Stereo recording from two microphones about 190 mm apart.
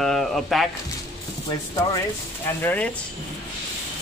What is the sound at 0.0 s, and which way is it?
Squish, centre (ahead or behind).